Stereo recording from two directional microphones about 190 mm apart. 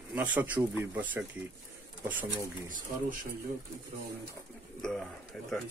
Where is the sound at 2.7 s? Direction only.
45° right (ahead or behind).